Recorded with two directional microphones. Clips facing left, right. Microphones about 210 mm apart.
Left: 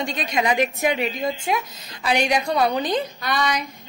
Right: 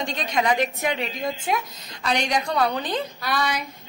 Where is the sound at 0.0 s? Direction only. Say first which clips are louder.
Left 1 dB; 10° left (ahead or behind).